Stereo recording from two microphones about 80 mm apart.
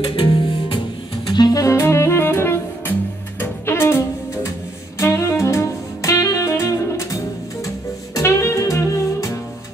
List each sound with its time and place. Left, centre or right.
0.1 s music: left
1.3 s saxophone: left
1.8 s music: left
4.9 s saxophone: left
7.6 s music: left